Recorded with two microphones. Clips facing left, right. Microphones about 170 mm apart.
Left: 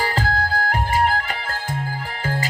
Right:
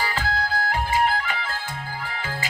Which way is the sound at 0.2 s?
40° left (ahead or behind).